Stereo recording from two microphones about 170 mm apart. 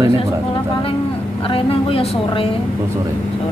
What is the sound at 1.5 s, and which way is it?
Speech, 35° left (ahead or behind).